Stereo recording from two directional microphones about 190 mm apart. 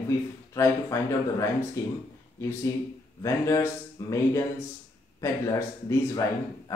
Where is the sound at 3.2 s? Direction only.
15° left (ahead or behind).